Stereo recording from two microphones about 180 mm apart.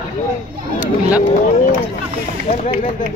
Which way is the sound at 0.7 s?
10° right (ahead or behind).